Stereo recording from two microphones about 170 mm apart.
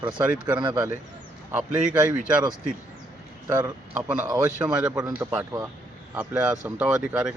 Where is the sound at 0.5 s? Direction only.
25° right (ahead or behind).